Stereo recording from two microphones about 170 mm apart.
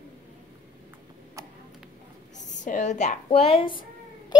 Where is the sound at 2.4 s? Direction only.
45° left (ahead or behind).